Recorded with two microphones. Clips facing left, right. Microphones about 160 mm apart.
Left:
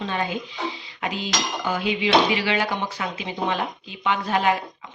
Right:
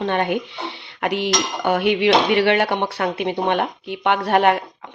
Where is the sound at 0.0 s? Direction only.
65° right (ahead or behind).